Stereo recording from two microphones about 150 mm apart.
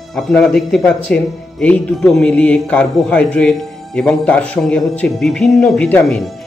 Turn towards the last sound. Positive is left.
turn(degrees=10)  # may be behind; listen again after turning